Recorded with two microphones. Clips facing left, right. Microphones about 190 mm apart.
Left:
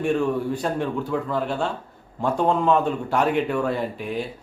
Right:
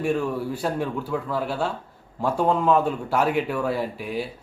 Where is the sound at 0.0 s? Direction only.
5° right (ahead or behind).